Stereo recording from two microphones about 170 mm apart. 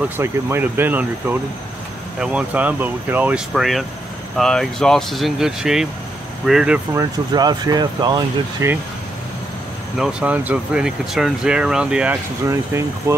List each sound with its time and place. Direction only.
0.2 s speech: 15° right (ahead or behind)
2.1 s speech: 5° right (ahead or behind)
6.9 s speech: 20° right (ahead or behind)
9.9 s speech: 5° right (ahead or behind)